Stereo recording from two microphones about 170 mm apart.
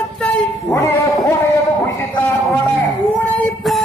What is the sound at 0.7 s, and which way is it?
Music, 20° left (ahead or behind).